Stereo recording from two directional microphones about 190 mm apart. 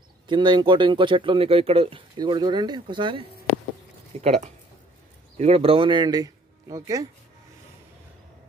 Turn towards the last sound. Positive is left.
turn(degrees=-15)  # may be behind; listen again after turning